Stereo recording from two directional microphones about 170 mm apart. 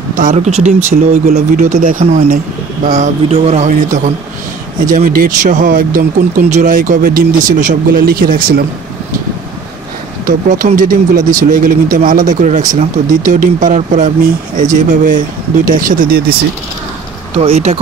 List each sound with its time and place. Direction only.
0.1 s a sound: 50° right (ahead or behind)
0.7 s speech: 45° right (ahead or behind)
4.8 s speech: 55° right (ahead or behind)
10.2 s speech: 50° right (ahead or behind)
11.1 s speech: 20° right (ahead or behind)
11.5 s speech: 55° right (ahead or behind)
17.4 s speech: 40° right (ahead or behind)